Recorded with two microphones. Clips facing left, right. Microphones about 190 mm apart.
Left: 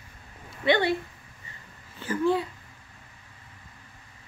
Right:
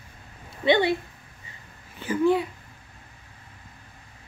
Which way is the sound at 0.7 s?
15° right (ahead or behind).